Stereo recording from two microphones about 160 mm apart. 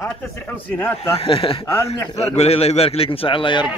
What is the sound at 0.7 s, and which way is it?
Speech, 10° left (ahead or behind).